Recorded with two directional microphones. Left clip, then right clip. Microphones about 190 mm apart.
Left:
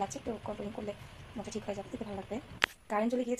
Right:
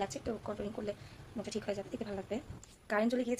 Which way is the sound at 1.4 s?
15° right (ahead or behind).